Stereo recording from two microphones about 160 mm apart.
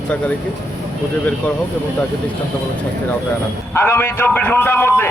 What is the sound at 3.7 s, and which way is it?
A man's voice, 15° left (ahead or behind).